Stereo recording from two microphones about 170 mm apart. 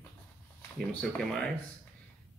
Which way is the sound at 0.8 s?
5° left (ahead or behind).